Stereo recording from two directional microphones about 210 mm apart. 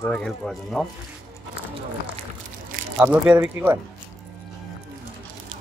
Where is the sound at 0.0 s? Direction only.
Centre (ahead or behind).